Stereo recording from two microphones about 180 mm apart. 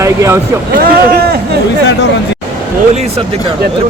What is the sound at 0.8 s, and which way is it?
Speech, 60° right (ahead or behind).